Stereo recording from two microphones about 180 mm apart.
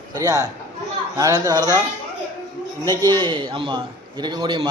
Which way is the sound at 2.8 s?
20° right (ahead or behind).